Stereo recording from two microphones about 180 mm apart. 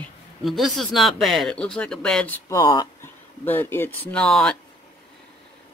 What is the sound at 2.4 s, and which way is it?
Speech, 20° left (ahead or behind).